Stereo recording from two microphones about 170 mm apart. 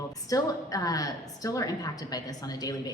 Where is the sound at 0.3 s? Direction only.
20° left (ahead or behind).